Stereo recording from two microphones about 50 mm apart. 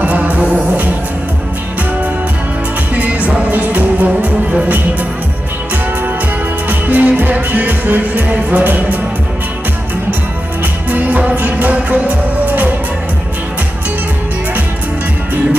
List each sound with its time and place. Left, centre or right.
0.0 s music: right
2.9 s music: right
6.7 s music: right
10.9 s music: right